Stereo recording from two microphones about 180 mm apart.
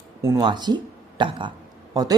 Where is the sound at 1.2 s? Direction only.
25° right (ahead or behind).